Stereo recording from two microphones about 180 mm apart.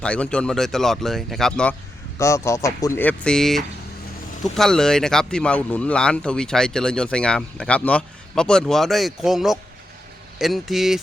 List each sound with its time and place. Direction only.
0.0 s speech: 5° left (ahead or behind)
2.1 s speech: 15° left (ahead or behind); by 11.0 s centre (ahead or behind)